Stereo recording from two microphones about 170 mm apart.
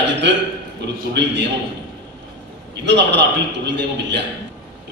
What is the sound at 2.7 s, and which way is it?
A man's voice, 90° right.